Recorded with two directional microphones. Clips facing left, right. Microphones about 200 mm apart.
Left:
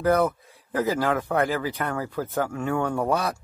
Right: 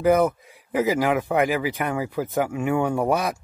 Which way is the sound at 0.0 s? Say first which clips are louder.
Right 3 dB; 15° right (ahead or behind).